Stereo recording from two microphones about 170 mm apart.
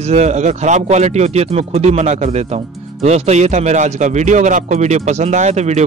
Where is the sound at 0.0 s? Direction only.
40° right (ahead or behind).